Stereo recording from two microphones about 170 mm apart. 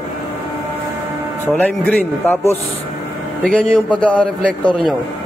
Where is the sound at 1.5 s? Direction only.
10° left (ahead or behind).